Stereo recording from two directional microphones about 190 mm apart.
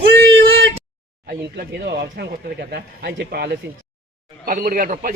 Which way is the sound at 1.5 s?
55° right (ahead or behind).